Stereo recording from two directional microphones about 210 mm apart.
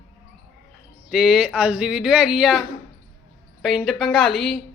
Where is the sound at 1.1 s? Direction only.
Centre (ahead or behind).